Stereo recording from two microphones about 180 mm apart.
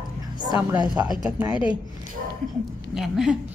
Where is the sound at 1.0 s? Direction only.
15° right (ahead or behind).